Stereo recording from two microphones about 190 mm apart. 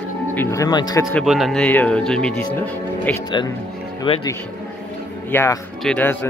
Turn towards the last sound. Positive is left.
turn(degrees=10)  # may be behind; listen again after turning